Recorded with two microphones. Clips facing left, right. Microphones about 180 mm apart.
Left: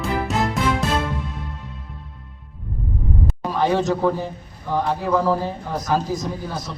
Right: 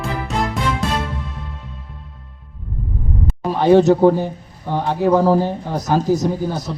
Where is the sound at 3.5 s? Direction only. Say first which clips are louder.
Right 8 dB; 35° right (ahead or behind).